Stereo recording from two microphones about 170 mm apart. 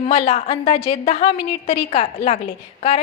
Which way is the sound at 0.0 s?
35° left (ahead or behind).